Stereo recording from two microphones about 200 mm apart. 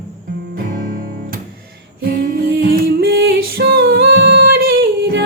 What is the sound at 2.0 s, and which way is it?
Music, 50° right (ahead or behind).